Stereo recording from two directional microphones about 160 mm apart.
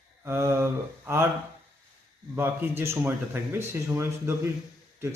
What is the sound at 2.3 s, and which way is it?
Speech, 15° right (ahead or behind).